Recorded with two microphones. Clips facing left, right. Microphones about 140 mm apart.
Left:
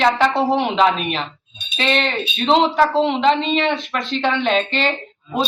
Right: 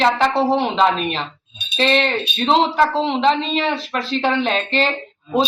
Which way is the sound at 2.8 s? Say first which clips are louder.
Left 1 dB; centre (ahead or behind).